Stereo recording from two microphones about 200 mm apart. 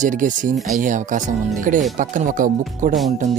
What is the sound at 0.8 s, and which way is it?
Speech, 40° right (ahead or behind).